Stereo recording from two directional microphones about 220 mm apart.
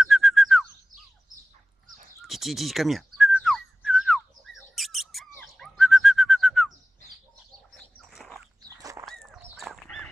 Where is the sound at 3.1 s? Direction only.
Centre (ahead or behind).